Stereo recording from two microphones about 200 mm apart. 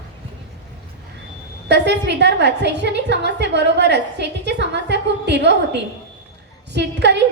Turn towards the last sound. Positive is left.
turn(degrees=-55)  # may be behind; listen again after turning